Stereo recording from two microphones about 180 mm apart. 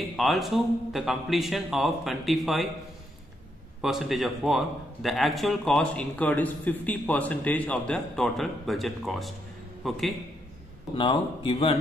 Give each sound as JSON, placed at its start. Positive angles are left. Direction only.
{"t": 0.1, "sound": "a man's voice", "side_deg": 0}
{"t": 3.8, "sound": "a man's voice", "side_deg": 0}
{"t": 11.0, "sound": "speech", "side_deg": 30}